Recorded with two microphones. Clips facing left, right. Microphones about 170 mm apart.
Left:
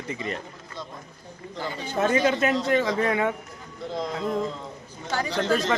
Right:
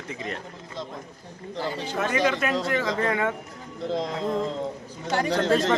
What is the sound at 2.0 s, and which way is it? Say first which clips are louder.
Speech: left 3 dB; 25° left (ahead or behind).